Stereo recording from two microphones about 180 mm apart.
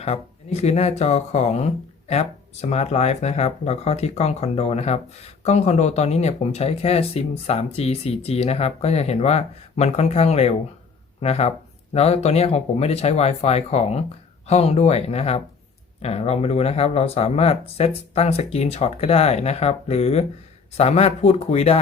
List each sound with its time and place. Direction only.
0.0 s speech: 35° left (ahead or behind)